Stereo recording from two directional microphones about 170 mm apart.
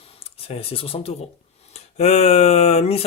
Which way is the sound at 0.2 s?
35° left (ahead or behind).